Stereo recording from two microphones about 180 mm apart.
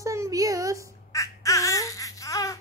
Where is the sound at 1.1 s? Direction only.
15° left (ahead or behind).